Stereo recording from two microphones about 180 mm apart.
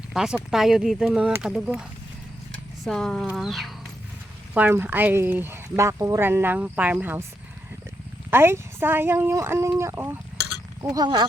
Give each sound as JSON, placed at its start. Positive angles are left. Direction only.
{"t": 0.1, "sound": "speech", "side_deg": -5}
{"t": 4.5, "sound": "speech", "side_deg": -10}
{"t": 8.3, "sound": "speech", "side_deg": -15}